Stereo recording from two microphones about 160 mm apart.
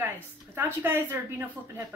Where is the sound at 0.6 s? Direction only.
15° right (ahead or behind).